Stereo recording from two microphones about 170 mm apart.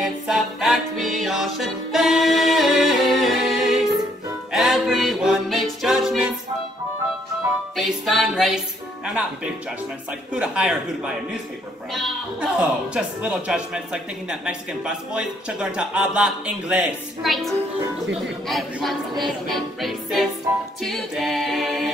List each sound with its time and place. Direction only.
0.0 s music: 5° right (ahead or behind)
7.7 s speech: centre (ahead or behind)
11.9 s speech: centre (ahead or behind)